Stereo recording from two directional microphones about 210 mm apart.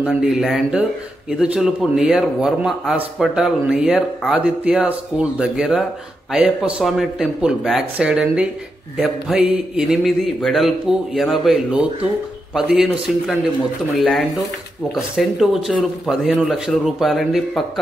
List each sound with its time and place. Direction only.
0.0 s speech: 5° right (ahead or behind)